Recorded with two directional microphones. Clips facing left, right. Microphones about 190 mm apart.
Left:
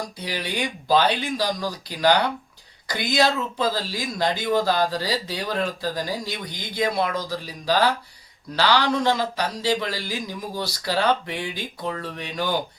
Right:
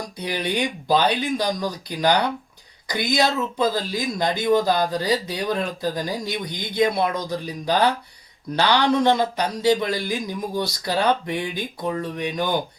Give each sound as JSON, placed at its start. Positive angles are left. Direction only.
{"t": 0.2, "sound": "speech", "side_deg": -20}